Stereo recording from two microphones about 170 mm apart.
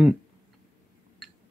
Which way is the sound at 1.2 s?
Centre (ahead or behind).